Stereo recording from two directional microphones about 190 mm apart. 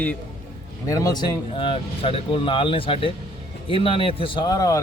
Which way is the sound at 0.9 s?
20° left (ahead or behind).